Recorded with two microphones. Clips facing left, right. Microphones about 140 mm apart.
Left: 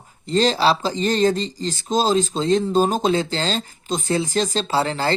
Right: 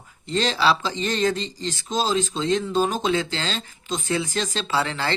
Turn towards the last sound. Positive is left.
turn(degrees=35)  # may be behind; listen again after turning